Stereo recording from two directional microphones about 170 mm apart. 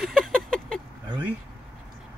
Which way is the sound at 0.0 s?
Centre (ahead or behind).